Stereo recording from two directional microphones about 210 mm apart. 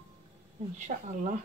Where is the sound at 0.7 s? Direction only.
35° right (ahead or behind).